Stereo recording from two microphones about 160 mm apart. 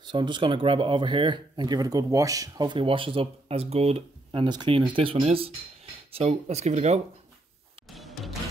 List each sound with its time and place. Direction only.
0.0 s speech: 30° right (ahead or behind); by 7.0 s 45° right (ahead or behind)
7.9 s music: centre (ahead or behind)